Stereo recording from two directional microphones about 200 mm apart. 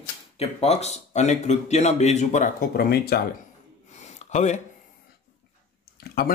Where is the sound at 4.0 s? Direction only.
35° left (ahead or behind).